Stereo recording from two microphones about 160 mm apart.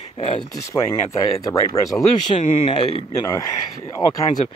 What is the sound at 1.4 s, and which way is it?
Speech, 20° left (ahead or behind).